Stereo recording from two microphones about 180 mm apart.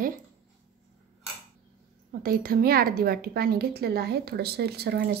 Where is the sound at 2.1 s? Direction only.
55° right (ahead or behind).